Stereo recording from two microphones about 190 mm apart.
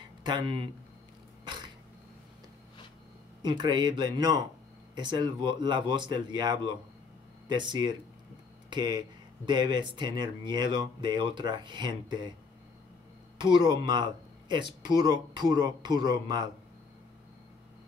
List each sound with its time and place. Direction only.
0.2 s speech: 25° right (ahead or behind)
1.4 s a sound: 25° right (ahead or behind)
3.4 s speech: 25° right (ahead or behind)
13.4 s speech: 25° right (ahead or behind)